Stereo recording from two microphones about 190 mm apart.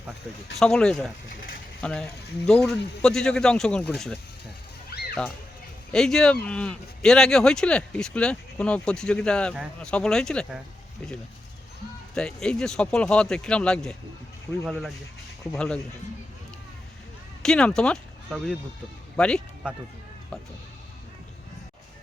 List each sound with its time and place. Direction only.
0.6 s speech: 5° left (ahead or behind)
4.9 s a sound: 55° left (ahead or behind)
5.9 s speech: centre (ahead or behind)
12.1 s speech: 5° left (ahead or behind)
17.4 s speech: 5° left (ahead or behind)